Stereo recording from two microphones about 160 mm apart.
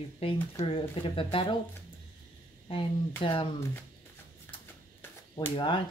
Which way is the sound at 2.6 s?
35° left (ahead or behind).